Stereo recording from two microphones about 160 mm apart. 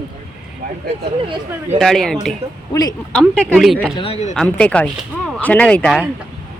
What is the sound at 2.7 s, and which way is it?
Speech, 25° left (ahead or behind).